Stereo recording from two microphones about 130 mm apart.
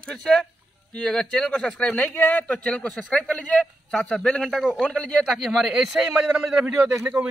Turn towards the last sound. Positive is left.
turn(degrees=-20)  # may be behind; listen again after turning